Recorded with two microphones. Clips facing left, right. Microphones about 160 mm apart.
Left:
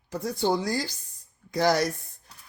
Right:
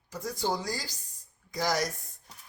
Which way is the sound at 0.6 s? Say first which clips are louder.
Left 7 dB; 65° left (ahead or behind).